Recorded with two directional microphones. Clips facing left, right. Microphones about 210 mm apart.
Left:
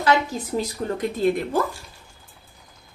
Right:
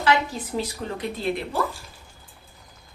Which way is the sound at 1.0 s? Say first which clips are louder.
Left 6 dB; 45° left (ahead or behind).